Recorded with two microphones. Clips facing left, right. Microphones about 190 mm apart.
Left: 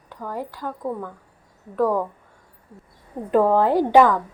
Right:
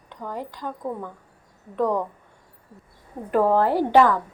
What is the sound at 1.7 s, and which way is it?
Speech, 5° left (ahead or behind).